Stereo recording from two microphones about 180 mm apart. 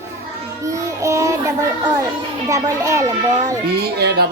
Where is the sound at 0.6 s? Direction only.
15° right (ahead or behind).